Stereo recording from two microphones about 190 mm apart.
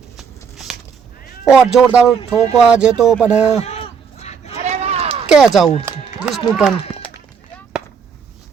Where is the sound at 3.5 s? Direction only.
35° left (ahead or behind).